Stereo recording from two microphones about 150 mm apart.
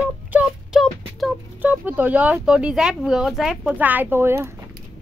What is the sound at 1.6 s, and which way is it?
Speech, 10° right (ahead or behind).